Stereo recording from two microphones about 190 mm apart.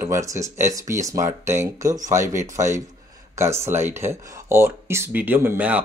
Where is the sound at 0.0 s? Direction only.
15° right (ahead or behind).